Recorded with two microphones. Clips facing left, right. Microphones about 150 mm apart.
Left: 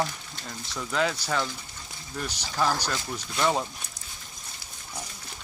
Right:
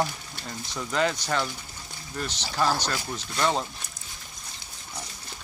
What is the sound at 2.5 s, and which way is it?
Speech, 10° right (ahead or behind).